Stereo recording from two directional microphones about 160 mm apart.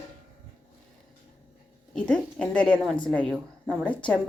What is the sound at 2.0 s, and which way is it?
Speech, 5° left (ahead or behind).